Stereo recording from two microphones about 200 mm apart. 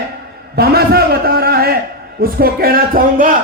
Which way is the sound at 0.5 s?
50° right (ahead or behind).